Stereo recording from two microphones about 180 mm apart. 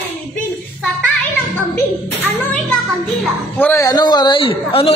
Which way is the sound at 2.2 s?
10° left (ahead or behind).